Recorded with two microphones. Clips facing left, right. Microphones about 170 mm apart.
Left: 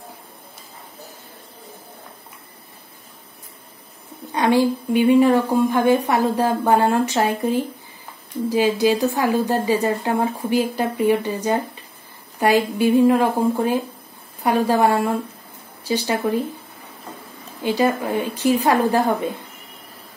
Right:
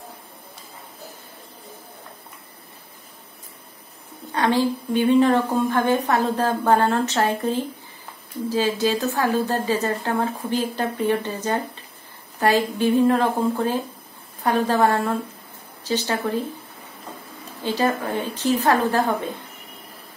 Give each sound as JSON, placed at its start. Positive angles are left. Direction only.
{"t": 4.3, "sound": "a woman's voice", "side_deg": 15}
{"t": 17.6, "sound": "a woman's voice", "side_deg": 10}